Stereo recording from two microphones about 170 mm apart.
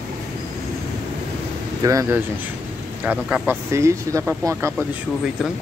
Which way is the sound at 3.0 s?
10° right (ahead or behind).